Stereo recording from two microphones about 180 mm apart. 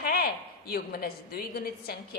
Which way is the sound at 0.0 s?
55° left (ahead or behind).